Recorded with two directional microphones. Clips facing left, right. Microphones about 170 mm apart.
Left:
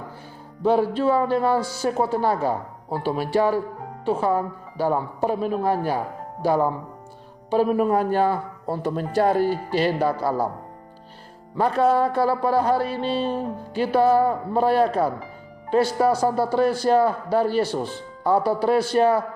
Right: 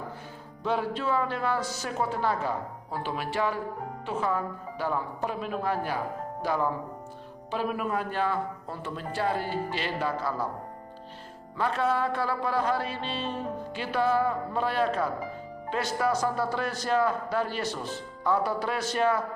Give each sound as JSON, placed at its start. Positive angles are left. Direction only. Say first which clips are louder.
{"t": 0.6, "sound": "speech", "louder": "left 9 dB", "side_deg": 35}
{"t": 11.6, "sound": "speech", "louder": "left 8 dB", "side_deg": 40}